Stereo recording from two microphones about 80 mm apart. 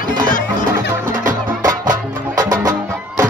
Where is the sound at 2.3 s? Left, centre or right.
Right.